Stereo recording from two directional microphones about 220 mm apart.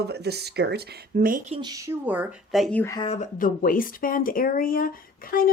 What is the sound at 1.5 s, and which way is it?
A woman's voice, 20° right (ahead or behind).